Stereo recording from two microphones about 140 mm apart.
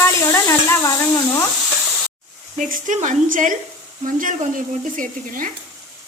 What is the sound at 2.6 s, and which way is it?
Speech, 75° right (ahead or behind).